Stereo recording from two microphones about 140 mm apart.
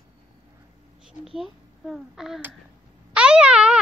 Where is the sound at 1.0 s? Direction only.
Centre (ahead or behind).